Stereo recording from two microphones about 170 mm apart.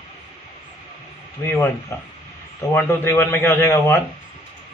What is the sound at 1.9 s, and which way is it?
A man's voice, 15° left (ahead or behind).